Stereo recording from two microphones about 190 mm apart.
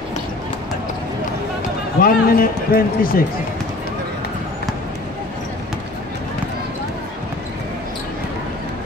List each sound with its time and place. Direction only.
2.0 s speech: 50° left (ahead or behind)